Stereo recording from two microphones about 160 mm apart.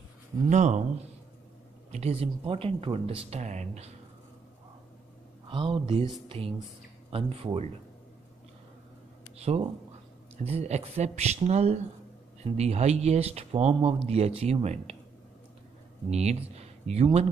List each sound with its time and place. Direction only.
0.5 s speech: 45° right (ahead or behind)
1.9 s speech: 40° right (ahead or behind)
5.5 s speech: 35° right (ahead or behind)
10.3 s speech: 40° right (ahead or behind)
16.1 s speech: 40° right (ahead or behind)